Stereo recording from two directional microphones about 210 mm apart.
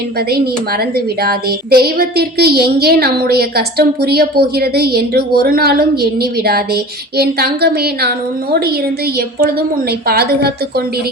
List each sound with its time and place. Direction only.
0.3 s a woman's voice: 45° right (ahead or behind)